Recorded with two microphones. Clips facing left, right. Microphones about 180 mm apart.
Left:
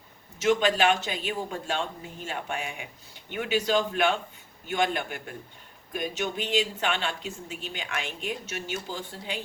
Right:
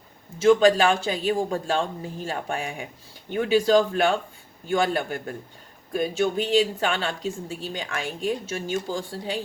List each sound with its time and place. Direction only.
0.4 s speech: 35° right (ahead or behind)